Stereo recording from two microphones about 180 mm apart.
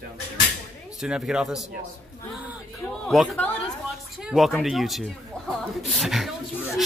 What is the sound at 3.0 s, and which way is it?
Speech, centre (ahead or behind).